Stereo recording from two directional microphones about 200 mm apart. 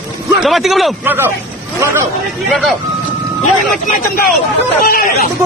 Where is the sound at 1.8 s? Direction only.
15° right (ahead or behind).